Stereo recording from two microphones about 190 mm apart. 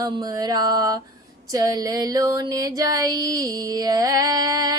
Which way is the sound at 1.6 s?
20° right (ahead or behind).